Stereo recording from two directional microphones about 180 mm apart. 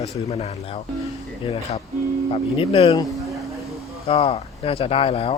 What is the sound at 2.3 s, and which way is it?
Speech, 30° left (ahead or behind).